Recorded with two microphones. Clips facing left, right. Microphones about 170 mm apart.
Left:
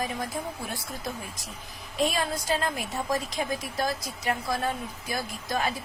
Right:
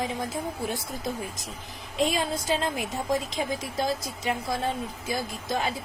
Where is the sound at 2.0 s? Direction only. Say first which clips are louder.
Right 1 dB; 20° right (ahead or behind).